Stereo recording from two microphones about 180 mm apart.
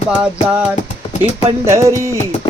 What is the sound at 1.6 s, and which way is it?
Music, 15° right (ahead or behind).